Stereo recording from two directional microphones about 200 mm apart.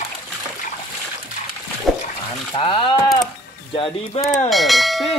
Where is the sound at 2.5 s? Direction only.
25° left (ahead or behind).